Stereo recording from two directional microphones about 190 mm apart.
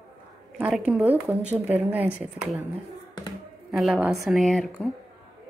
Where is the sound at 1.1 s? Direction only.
5° right (ahead or behind).